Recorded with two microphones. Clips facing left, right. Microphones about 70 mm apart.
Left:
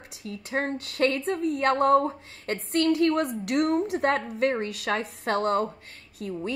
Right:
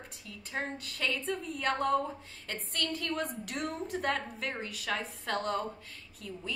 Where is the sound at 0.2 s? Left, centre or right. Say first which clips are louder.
Left 9 dB; left.